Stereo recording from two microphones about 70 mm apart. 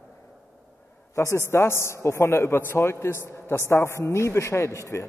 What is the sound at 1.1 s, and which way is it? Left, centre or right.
A woman's voice, left.